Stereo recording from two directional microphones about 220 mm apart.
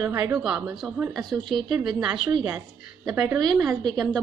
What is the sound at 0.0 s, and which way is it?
Speech, 15° right (ahead or behind).